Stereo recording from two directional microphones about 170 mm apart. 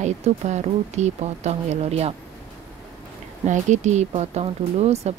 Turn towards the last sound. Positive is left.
turn(degrees=-40)  # may be behind; listen again after turning